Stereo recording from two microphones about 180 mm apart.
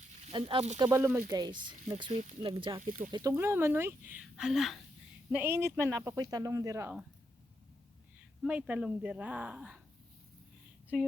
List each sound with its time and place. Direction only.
0.2 s speech: 35° right (ahead or behind)
0.8 s speech: 15° right (ahead or behind)
5.3 s speech: 10° right (ahead or behind)
8.4 s speech: 5° right (ahead or behind)